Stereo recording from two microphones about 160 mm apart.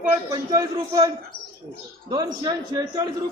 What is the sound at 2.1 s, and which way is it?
Speech, 25° right (ahead or behind).